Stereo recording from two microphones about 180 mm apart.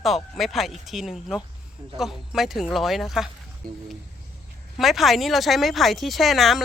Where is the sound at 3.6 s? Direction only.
55° right (ahead or behind).